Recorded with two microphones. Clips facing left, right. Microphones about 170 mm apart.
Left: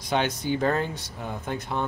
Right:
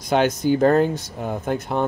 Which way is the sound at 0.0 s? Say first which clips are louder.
Right 7 dB; 45° right (ahead or behind).